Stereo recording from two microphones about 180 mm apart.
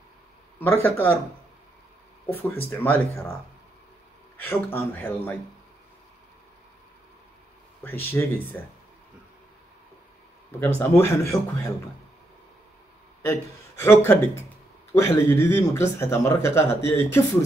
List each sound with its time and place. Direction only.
0.6 s speech: 10° left (ahead or behind)
2.3 s speech: 10° left (ahead or behind)
4.4 s speech: 10° left (ahead or behind)
7.8 s speech: 10° left (ahead or behind)
10.8 s speech: 15° left (ahead or behind)
13.2 s speech: 15° left (ahead or behind)